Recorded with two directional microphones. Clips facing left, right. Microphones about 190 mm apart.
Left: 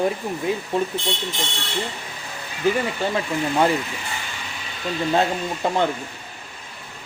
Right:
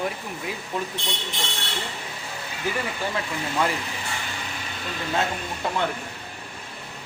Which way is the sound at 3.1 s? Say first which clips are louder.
Left 6 dB; 25° left (ahead or behind).